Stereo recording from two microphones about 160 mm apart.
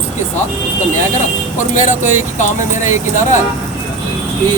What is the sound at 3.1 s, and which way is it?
Speech, 50° left (ahead or behind).